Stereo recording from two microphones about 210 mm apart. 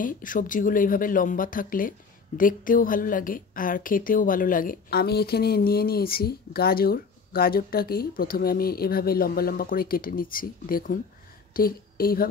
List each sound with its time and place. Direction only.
0.0 s speech: 40° left (ahead or behind)